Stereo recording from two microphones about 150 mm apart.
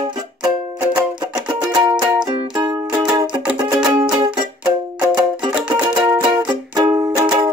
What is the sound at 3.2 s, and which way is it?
Music, 5° right (ahead or behind).